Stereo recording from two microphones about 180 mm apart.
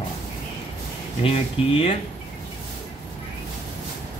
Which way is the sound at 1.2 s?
30° left (ahead or behind).